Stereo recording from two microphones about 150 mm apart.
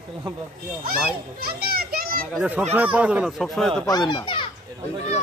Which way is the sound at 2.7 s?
10° right (ahead or behind).